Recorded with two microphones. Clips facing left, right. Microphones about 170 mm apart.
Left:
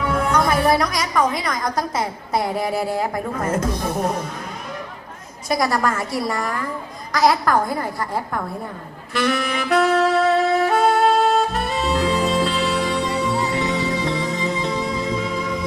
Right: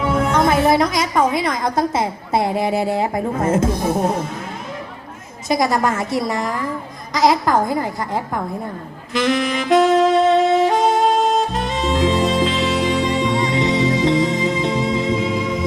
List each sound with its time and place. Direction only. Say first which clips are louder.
0.0 s a woman's voice: right 3 dB; 25° right (ahead or behind)
5.5 s a woman's voice: right 3 dB; 20° right (ahead or behind)
9.1 s saxophone: right 3 dB; 20° right (ahead or behind)
11.9 s music: right 3 dB; 20° right (ahead or behind)